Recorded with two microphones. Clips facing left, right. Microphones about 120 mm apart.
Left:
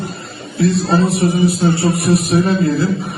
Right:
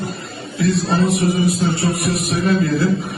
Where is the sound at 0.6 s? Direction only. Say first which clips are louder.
Left 3 dB; 30° left (ahead or behind).